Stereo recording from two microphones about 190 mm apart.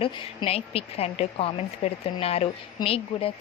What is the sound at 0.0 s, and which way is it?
A woman's voice, 30° left (ahead or behind).